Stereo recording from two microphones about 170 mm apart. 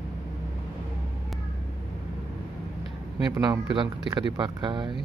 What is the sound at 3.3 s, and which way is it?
Speech, 20° right (ahead or behind).